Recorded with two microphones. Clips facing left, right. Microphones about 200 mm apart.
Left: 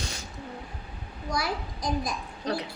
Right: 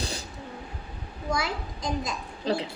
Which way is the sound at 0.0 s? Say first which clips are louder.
Right 4 dB; 35° right (ahead or behind).